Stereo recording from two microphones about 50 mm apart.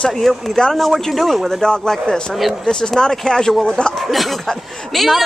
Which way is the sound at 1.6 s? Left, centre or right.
Centre.